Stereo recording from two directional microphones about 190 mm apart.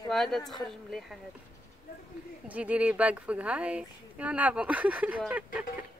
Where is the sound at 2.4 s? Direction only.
5° right (ahead or behind).